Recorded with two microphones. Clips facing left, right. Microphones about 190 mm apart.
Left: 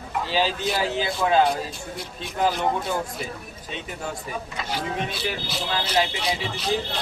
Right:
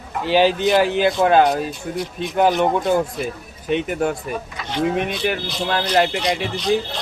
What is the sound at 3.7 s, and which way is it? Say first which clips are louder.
Speech: right 13 dB; 65° right (ahead or behind).